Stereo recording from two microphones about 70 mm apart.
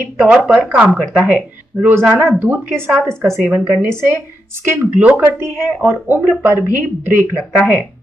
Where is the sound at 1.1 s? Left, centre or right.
Centre.